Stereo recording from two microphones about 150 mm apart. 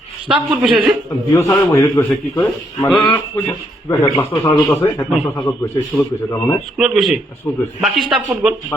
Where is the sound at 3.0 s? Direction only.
15° left (ahead or behind).